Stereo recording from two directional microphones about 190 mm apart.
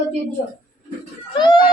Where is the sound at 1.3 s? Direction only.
25° left (ahead or behind).